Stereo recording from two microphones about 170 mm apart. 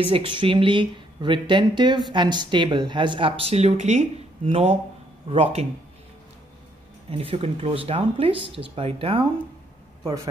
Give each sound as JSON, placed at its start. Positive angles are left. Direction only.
{"t": 0.0, "sound": "speech", "side_deg": -30}
{"t": 7.1, "sound": "speech", "side_deg": -35}